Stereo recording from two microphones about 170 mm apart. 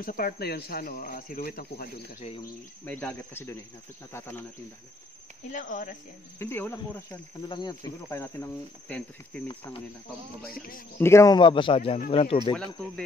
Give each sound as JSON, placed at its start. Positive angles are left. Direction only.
{"t": 0.0, "sound": "speech", "side_deg": 60}
{"t": 2.8, "sound": "speech", "side_deg": 10}
{"t": 5.5, "sound": "speech", "side_deg": 50}
{"t": 6.4, "sound": "speech", "side_deg": 15}
{"t": 7.4, "sound": "speech", "side_deg": 25}
{"t": 11.0, "sound": "speech", "side_deg": 15}